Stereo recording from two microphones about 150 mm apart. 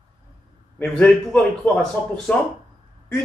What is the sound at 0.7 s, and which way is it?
A man's voice, 5° left (ahead or behind).